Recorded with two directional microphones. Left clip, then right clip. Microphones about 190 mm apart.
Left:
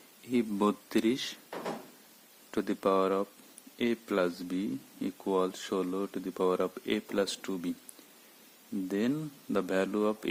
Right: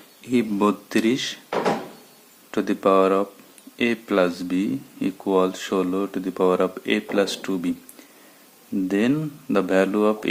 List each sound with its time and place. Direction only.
0.3 s speech: 45° left (ahead or behind)
2.5 s speech: 40° left (ahead or behind)
8.9 s speech: 40° left (ahead or behind)